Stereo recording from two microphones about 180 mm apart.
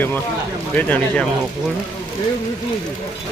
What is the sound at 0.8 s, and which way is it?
Speech, 10° left (ahead or behind).